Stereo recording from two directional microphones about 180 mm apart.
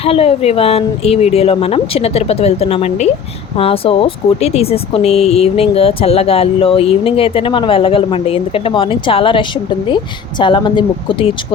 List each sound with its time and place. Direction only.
0.0 s speech: 35° left (ahead or behind)